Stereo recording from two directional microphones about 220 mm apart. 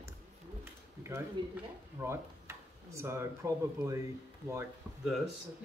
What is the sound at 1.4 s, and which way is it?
Speech, 20° right (ahead or behind).